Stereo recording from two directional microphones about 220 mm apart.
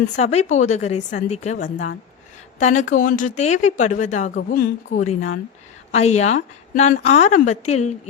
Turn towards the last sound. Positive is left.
turn(degrees=30)  # may be behind; listen again after turning